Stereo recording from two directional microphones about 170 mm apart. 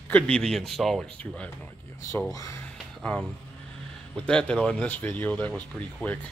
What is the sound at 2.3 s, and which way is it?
Speech, 20° left (ahead or behind).